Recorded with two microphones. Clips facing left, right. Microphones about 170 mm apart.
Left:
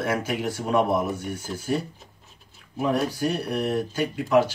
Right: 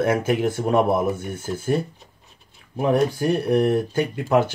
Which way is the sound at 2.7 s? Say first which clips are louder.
Right 5 dB; 55° right (ahead or behind).